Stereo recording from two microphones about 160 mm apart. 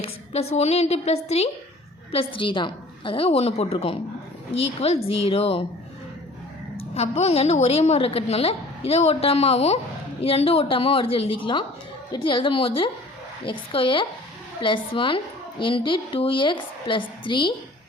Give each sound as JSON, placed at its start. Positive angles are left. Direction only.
{"t": 0.0, "sound": "a woman's voice", "side_deg": 40}
{"t": 6.9, "sound": "a woman's voice", "side_deg": 40}